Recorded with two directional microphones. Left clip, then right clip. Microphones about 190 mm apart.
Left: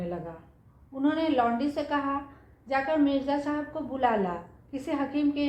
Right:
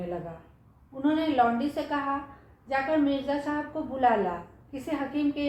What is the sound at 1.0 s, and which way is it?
A woman's voice, 30° left (ahead or behind).